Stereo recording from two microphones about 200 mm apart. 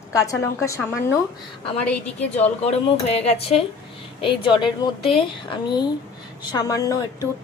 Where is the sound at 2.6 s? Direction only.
30° left (ahead or behind).